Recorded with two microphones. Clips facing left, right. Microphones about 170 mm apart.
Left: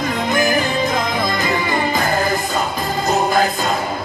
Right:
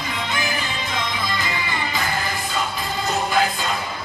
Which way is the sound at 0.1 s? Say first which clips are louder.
Left 9 dB; 45° left (ahead or behind).